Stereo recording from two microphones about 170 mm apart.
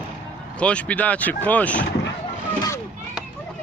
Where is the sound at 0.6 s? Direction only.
5° left (ahead or behind).